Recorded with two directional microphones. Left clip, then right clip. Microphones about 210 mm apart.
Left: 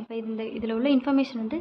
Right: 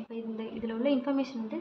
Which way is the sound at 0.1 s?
55° left (ahead or behind).